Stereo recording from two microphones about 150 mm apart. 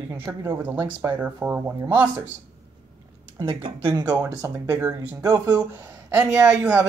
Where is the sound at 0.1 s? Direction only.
15° right (ahead or behind).